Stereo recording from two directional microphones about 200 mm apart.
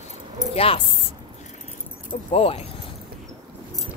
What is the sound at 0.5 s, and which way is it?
Speech, 30° left (ahead or behind).